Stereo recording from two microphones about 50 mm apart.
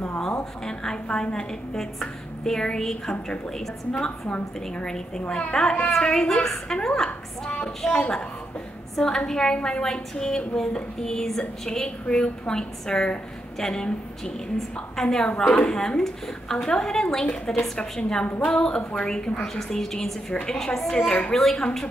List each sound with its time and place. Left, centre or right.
0.7 s a woman's voice: centre
18.4 s a woman's voice: centre